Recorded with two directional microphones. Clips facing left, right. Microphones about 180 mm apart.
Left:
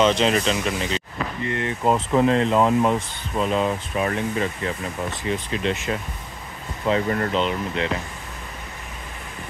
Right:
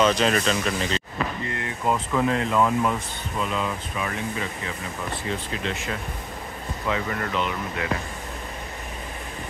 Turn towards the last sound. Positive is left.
turn(degrees=30)  # may be behind; listen again after turning